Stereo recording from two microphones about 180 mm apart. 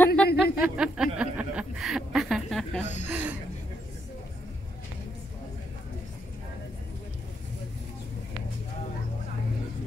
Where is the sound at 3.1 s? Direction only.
10° right (ahead or behind).